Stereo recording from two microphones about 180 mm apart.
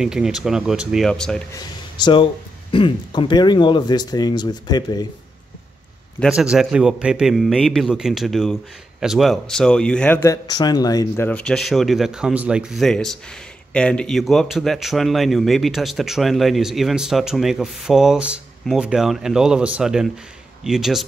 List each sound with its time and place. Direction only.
0.0 s speech: 5° right (ahead or behind)
1.5 s speech: 25° left (ahead or behind)
6.1 s speech: centre (ahead or behind); by 11.2 s 20° left (ahead or behind)
11.2 s speech: 5° left (ahead or behind)